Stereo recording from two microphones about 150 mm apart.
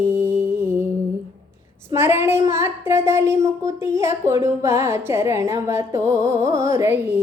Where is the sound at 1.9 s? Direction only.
15° right (ahead or behind).